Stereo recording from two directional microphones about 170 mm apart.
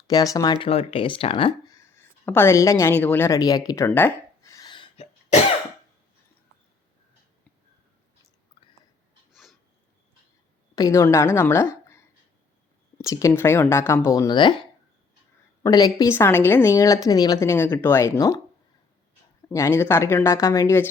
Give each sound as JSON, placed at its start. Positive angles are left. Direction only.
{"t": 0.1, "sound": "speech", "side_deg": 25}
{"t": 1.7, "sound": "a sound", "side_deg": 15}
{"t": 9.3, "sound": "a sound", "side_deg": 0}
{"t": 10.8, "sound": "a woman's voice", "side_deg": 20}
{"t": 13.0, "sound": "a woman's voice", "side_deg": 20}
{"t": 19.5, "sound": "a woman's voice", "side_deg": 15}